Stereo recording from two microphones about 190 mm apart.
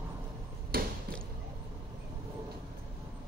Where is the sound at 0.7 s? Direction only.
50° right (ahead or behind).